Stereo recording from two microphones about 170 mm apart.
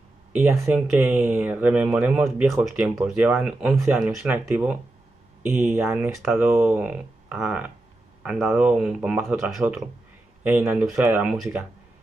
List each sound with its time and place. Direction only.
0.3 s speech: 10° right (ahead or behind)